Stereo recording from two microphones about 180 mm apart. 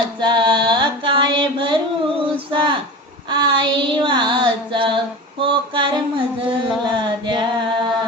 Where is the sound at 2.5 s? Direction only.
25° right (ahead or behind).